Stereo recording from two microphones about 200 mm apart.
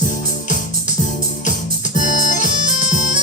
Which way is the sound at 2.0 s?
40° left (ahead or behind).